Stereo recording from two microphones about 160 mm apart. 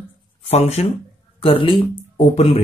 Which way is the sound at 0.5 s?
45° left (ahead or behind).